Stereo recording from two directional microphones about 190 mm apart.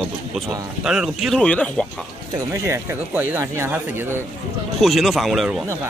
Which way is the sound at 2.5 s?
15° right (ahead or behind).